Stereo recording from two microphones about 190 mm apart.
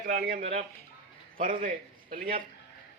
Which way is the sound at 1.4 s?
45° right (ahead or behind).